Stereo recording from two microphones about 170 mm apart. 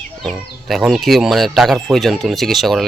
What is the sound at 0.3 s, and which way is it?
Speech, centre (ahead or behind).